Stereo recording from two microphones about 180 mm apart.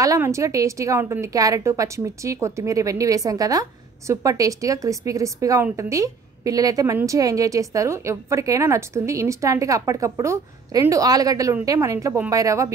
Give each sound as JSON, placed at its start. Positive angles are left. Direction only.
{"t": 0.0, "sound": "a woman's voice", "side_deg": -15}